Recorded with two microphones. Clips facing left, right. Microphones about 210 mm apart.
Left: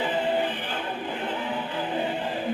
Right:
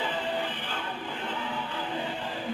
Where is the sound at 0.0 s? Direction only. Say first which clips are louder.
Left 6 dB; 15° left (ahead or behind).